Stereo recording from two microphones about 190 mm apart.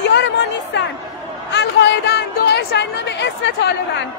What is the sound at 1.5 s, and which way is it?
A woman's voice, 65° left (ahead or behind).